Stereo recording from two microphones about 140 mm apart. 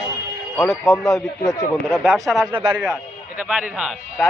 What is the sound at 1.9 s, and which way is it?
Speech, 5° left (ahead or behind).